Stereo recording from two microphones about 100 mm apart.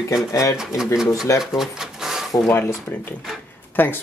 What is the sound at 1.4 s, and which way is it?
Drawer open or close, 5° right (ahead or behind).